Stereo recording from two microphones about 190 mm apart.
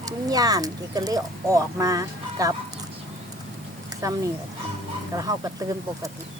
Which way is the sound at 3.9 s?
20° right (ahead or behind).